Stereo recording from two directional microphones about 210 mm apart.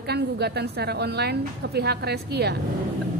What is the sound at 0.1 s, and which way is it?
A woman's voice, 50° right (ahead or behind).